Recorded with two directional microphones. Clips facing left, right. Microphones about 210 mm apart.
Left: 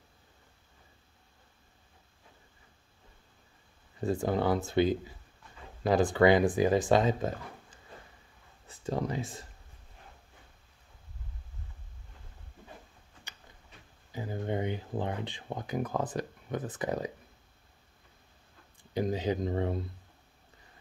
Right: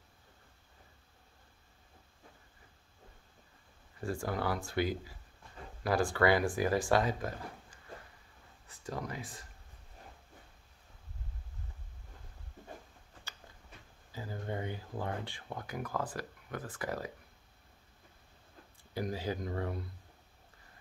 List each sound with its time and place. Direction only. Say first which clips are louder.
4.0 s speech: left 6 dB; 20° left (ahead or behind)
14.1 s speech: left 6 dB; 20° left (ahead or behind)
18.8 s speech: left 6 dB; 20° left (ahead or behind)